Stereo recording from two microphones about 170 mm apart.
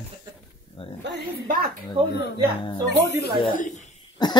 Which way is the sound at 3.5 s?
50° left (ahead or behind).